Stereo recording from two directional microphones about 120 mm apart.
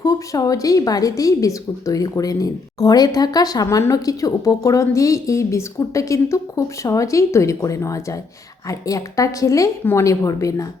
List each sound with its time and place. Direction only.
0.0 s speech: 30° left (ahead or behind)